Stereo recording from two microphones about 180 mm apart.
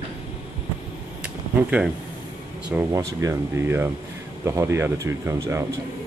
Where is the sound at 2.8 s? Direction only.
15° right (ahead or behind).